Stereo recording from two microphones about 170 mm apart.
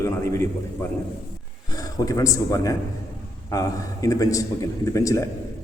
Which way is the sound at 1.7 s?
20° left (ahead or behind).